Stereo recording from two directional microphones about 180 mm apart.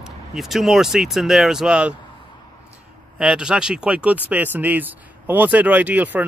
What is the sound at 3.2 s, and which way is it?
Speech, 5° right (ahead or behind).